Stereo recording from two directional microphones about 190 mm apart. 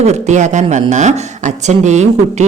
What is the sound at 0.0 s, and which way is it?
A man's voice, 35° right (ahead or behind).